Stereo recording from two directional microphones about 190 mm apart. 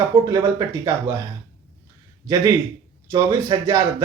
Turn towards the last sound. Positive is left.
turn(degrees=-20)  # may be behind; listen again after turning